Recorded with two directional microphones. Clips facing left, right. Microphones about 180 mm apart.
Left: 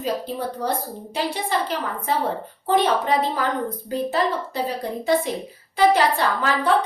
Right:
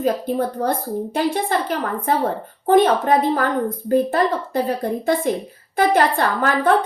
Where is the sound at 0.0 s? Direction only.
50° right (ahead or behind).